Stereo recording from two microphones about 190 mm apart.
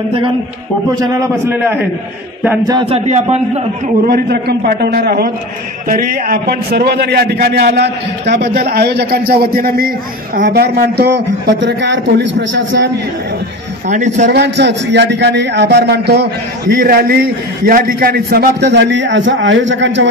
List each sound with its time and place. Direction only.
0.9 s a man's voice: 20° right (ahead or behind)
2.7 s a man's voice: 30° right (ahead or behind)
4.1 s a man's voice: 55° right (ahead or behind)
13.8 s a man's voice: 40° right (ahead or behind)
14.2 s a man's voice: 65° right (ahead or behind)